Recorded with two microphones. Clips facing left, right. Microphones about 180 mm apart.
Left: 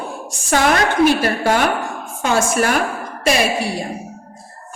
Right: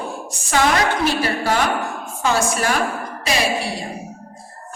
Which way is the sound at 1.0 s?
50° left (ahead or behind).